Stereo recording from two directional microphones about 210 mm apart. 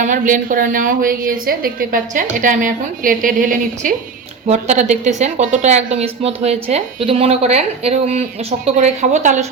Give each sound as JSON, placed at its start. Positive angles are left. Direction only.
{"t": 0.0, "sound": "a woman's voice", "side_deg": -40}